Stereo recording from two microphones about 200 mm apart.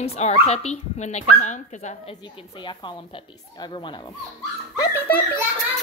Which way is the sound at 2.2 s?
25° left (ahead or behind).